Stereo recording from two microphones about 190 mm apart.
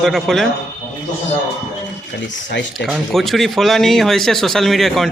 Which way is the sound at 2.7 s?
Centre (ahead or behind).